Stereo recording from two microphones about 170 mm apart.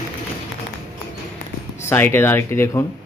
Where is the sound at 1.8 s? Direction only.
15° left (ahead or behind).